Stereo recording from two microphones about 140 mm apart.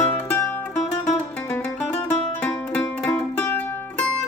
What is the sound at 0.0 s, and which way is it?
Music, 15° left (ahead or behind).